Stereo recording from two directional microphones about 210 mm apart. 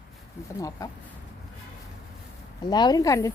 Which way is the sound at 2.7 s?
20° left (ahead or behind).